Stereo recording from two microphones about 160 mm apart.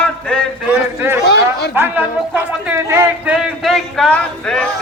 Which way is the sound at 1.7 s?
15° right (ahead or behind).